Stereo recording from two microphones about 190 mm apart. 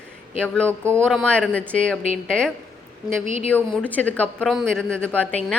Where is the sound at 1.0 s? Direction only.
5° left (ahead or behind).